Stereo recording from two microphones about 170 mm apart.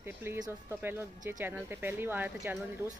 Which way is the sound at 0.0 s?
15° right (ahead or behind).